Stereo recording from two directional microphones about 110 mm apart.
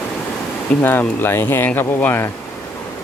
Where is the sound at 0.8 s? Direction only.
20° left (ahead or behind).